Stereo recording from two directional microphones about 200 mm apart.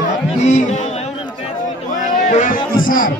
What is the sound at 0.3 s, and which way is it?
Music, 35° left (ahead or behind).